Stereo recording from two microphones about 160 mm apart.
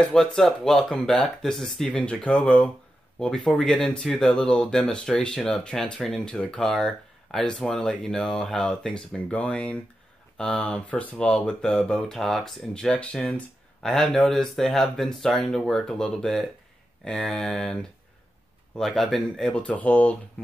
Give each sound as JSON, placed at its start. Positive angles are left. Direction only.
{"t": 0.0, "sound": "speech", "side_deg": 5}